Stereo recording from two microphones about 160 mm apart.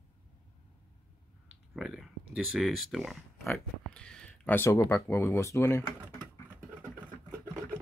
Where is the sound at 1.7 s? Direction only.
Centre (ahead or behind); by 5.8 s 15° left (ahead or behind).